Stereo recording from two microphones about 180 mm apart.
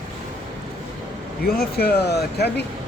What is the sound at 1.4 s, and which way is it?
Speech, 60° left (ahead or behind).